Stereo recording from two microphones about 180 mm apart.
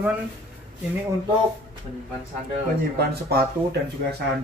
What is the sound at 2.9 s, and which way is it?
Speech, 60° right (ahead or behind).